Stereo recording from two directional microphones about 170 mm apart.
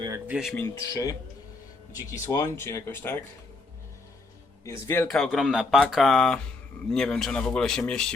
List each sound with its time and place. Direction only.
0.3 s speech: 5° right (ahead or behind)
0.5 s speech: 15° left (ahead or behind)
4.6 s speech: 15° left (ahead or behind)
5.0 s speech: 5° left (ahead or behind)